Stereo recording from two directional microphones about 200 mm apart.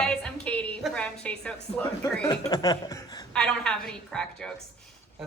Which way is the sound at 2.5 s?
20° left (ahead or behind).